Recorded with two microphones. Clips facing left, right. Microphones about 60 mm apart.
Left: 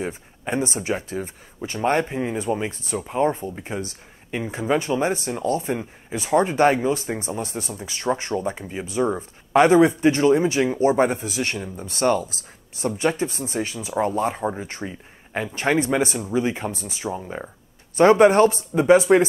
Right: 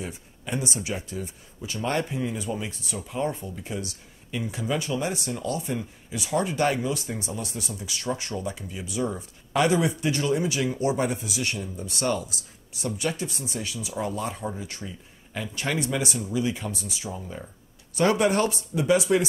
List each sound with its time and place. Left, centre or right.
0.0 s speech: left